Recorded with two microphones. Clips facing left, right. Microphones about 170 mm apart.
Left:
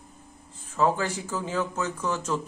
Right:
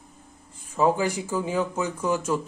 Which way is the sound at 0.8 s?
15° right (ahead or behind).